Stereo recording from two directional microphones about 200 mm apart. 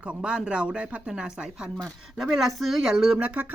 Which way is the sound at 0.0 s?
5° right (ahead or behind).